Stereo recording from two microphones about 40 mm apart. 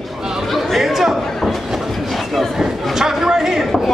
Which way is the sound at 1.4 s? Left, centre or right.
Centre.